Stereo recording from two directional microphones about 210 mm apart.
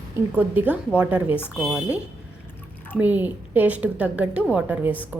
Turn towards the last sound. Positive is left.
turn(degrees=-5)  # may be behind; listen again after turning